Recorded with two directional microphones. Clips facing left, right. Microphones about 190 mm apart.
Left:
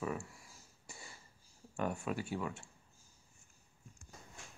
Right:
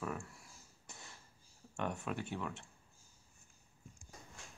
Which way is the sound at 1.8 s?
5° left (ahead or behind).